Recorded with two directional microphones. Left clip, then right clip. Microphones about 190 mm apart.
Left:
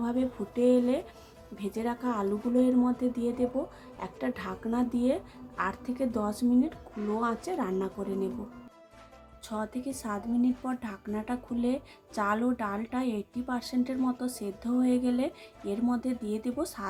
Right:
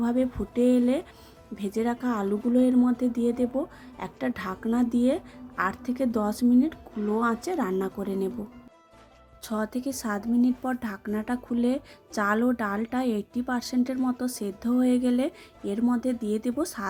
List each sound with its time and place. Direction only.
0.0 s a woman's voice: 20° right (ahead or behind)
9.5 s a woman's voice: 30° right (ahead or behind)